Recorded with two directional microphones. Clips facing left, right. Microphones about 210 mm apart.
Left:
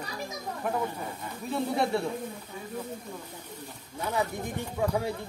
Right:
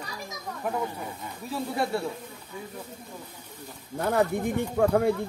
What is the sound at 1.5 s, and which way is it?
Speech, centre (ahead or behind).